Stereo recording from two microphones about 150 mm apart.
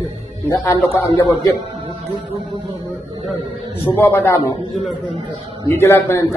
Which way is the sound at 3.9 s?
15° left (ahead or behind).